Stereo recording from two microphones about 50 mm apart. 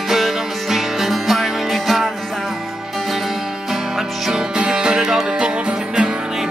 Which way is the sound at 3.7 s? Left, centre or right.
Centre.